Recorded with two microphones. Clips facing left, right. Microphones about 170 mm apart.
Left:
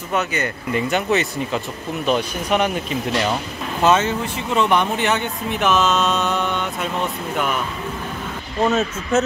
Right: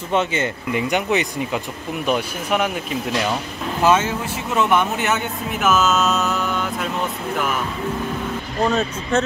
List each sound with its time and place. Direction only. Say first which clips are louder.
0.1 s speech: right 2 dB; 25° right (ahead or behind)
0.7 s speech: left 1 dB; 15° right (ahead or behind)
8.6 s speech: left 2 dB; 5° left (ahead or behind)